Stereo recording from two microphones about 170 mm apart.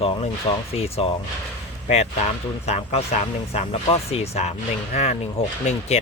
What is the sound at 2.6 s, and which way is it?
Speech, 40° left (ahead or behind).